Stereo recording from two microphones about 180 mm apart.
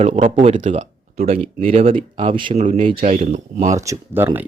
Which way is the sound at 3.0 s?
45° right (ahead or behind).